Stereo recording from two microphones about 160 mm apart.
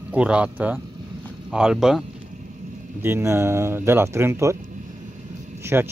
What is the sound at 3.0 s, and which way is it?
Speech, 15° right (ahead or behind).